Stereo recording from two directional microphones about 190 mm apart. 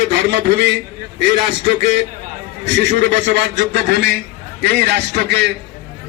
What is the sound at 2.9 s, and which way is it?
A man's voice, 60° right (ahead or behind).